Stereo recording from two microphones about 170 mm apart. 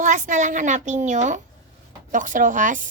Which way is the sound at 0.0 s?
50° right (ahead or behind).